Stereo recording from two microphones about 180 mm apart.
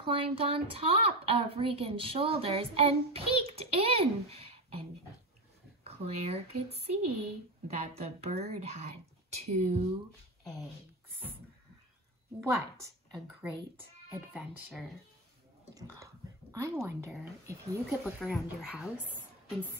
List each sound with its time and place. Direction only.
0.0 s speech: 30° right (ahead or behind)
5.9 s speech: 35° right (ahead or behind)
12.4 s a woman's voice: 15° right (ahead or behind)
16.6 s a woman's voice: 15° right (ahead or behind)